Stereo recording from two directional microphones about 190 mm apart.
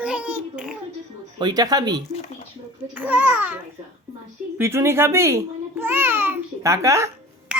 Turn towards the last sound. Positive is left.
turn(degrees=-15)  # may be behind; listen again after turning